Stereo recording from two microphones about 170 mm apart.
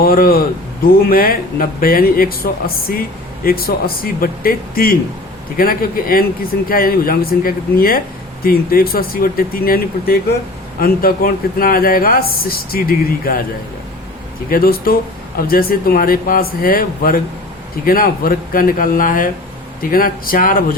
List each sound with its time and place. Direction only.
0.0 s speech: 60° left (ahead or behind)
14.5 s speech: 60° left (ahead or behind)